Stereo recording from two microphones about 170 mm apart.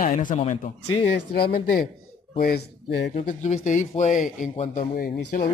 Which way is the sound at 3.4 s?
45° left (ahead or behind).